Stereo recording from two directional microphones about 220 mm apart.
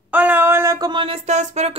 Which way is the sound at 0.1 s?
10° right (ahead or behind).